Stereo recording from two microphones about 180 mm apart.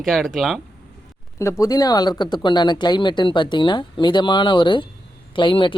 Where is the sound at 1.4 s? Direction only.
15° left (ahead or behind).